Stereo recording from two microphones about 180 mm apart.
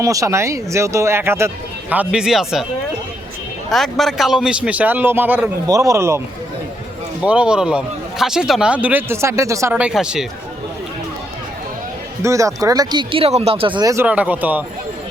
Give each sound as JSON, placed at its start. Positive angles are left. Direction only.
{"t": 0.0, "sound": "a man's voice", "side_deg": -20}
{"t": 3.7, "sound": "a man's voice", "side_deg": 0}
{"t": 12.2, "sound": "speech", "side_deg": -15}